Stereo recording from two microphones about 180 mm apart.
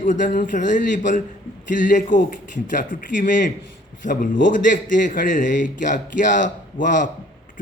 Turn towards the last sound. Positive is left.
turn(degrees=45)  # may be behind; listen again after turning